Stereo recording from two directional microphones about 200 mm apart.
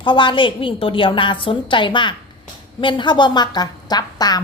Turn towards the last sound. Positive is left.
turn(degrees=20)  # may be behind; listen again after turning